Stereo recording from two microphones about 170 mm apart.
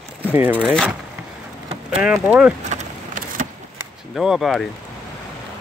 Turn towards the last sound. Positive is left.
turn(degrees=0)  # may be behind; listen again after turning